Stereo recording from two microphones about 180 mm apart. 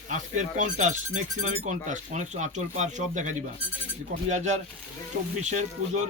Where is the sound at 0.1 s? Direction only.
45° right (ahead or behind).